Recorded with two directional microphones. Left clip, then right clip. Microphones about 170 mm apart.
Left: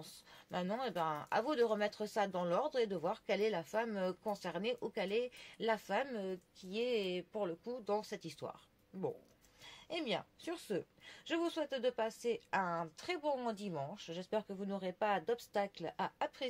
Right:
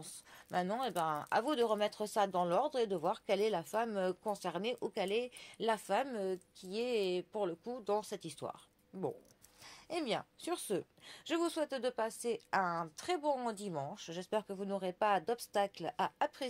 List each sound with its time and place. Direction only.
0.0 s speech: 40° right (ahead or behind)
9.8 s speech: 45° right (ahead or behind)